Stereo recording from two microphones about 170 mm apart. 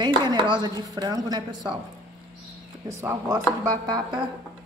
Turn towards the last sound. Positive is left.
turn(degrees=-20)  # may be behind; listen again after turning